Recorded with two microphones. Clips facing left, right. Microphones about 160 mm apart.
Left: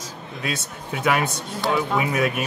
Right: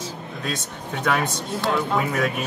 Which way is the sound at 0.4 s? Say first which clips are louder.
Left 1 dB; 5° left (ahead or behind).